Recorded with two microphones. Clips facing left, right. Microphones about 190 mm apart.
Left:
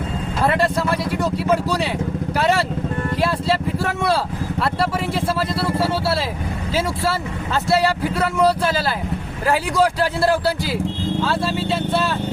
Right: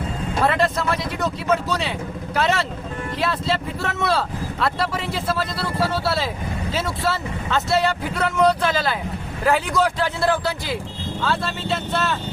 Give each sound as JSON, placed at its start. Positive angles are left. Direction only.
{"t": 3.2, "sound": "music", "side_deg": 5}
{"t": 6.7, "sound": "speech", "side_deg": 30}
{"t": 8.1, "sound": "speech", "side_deg": 10}
{"t": 9.7, "sound": "speech", "side_deg": 35}
{"t": 11.2, "sound": "speech", "side_deg": 10}